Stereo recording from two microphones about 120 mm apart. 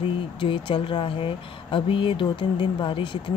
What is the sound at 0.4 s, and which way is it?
Speech, 40° left (ahead or behind).